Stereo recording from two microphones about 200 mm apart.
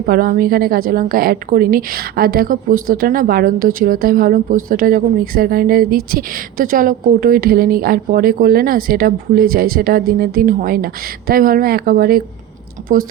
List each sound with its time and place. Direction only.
0.0 s a woman's voice: 45° right (ahead or behind)